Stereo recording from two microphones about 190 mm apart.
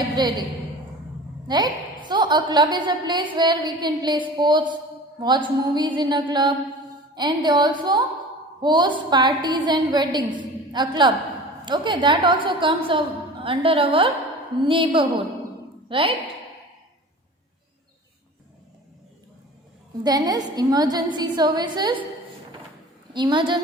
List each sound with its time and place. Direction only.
0.2 s a woman's voice: 25° right (ahead or behind)
1.5 s a woman's voice: 25° right (ahead or behind)
20.1 s a woman's voice: 20° right (ahead or behind)
23.1 s a woman's voice: 25° right (ahead or behind)